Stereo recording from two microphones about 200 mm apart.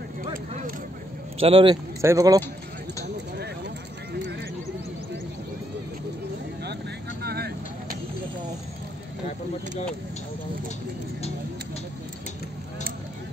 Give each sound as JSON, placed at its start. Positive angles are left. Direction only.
{"t": 1.4, "sound": "speech", "side_deg": -25}
{"t": 2.0, "sound": "speech", "side_deg": -15}
{"t": 4.1, "sound": "a sound", "side_deg": -55}
{"t": 6.6, "sound": "vehicle", "side_deg": -55}